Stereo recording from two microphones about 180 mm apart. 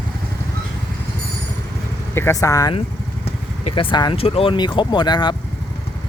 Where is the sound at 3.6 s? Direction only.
30° left (ahead or behind).